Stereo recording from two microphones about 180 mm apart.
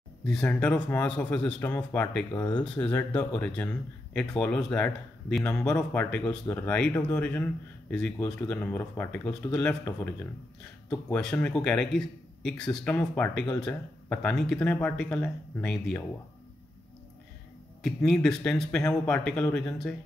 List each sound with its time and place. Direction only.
0.2 s speech: 5° left (ahead or behind)
5.8 s speech: 5° left (ahead or behind)
17.8 s speech: centre (ahead or behind)